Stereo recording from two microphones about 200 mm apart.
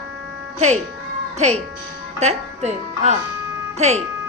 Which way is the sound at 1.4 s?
35° right (ahead or behind).